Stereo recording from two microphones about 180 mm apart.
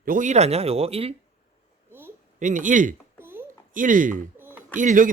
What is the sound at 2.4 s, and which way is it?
Speech, 45° right (ahead or behind).